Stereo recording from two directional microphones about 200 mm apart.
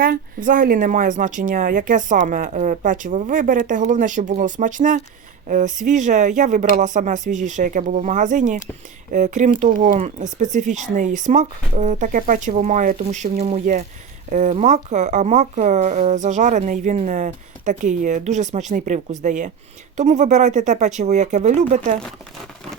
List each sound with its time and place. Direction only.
0.0 s speech: 45° right (ahead or behind)